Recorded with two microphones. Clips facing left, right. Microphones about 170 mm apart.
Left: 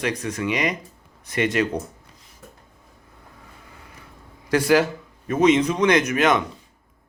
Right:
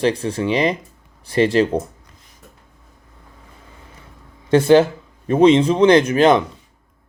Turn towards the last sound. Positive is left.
turn(degrees=-30)  # may be behind; listen again after turning